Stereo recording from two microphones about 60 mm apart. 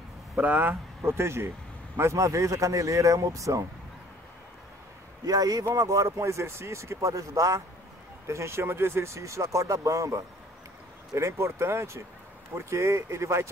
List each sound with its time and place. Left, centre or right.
0.4 s speech: right
1.0 s speech: right
2.0 s speech: right
5.2 s speech: right
5.8 s speech: right
8.3 s speech: right
11.1 s speech: right